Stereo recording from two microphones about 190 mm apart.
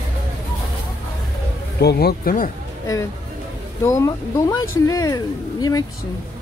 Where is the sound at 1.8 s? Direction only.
60° left (ahead or behind).